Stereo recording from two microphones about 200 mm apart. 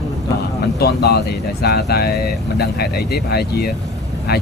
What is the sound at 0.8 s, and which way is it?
Speech, 55° left (ahead or behind).